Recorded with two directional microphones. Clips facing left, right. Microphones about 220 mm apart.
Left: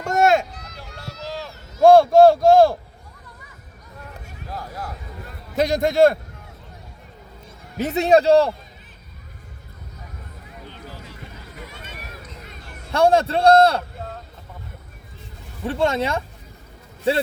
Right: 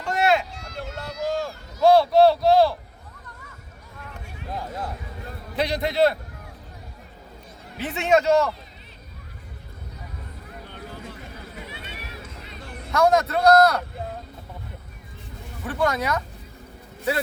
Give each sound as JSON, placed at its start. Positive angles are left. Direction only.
{"t": 0.0, "sound": "a sound", "side_deg": 45}
{"t": 0.5, "sound": "a sound", "side_deg": -25}
{"t": 1.8, "sound": "speech", "side_deg": 50}
{"t": 4.5, "sound": "a sound", "side_deg": -20}
{"t": 5.5, "sound": "speech", "side_deg": 45}
{"t": 7.8, "sound": "a man's voice", "side_deg": 40}
{"t": 11.6, "sound": "run", "side_deg": 45}
{"t": 12.9, "sound": "a man's voice", "side_deg": 30}
{"t": 15.6, "sound": "a man's voice", "side_deg": 25}